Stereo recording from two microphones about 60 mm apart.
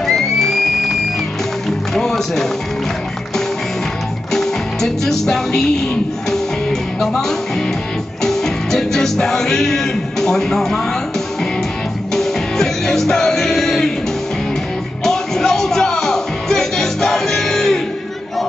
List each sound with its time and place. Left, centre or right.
0.0 s music: centre
2.0 s speech: centre
4.3 s music: centre
12.1 s music: centre
15.0 s music: centre